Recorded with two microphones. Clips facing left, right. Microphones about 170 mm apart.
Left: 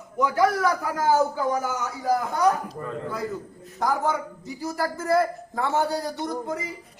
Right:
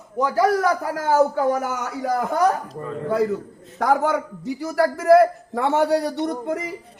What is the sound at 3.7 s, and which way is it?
A man's voice, 75° right (ahead or behind).